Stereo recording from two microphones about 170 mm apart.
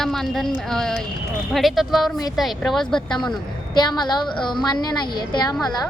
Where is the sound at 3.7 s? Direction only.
25° left (ahead or behind).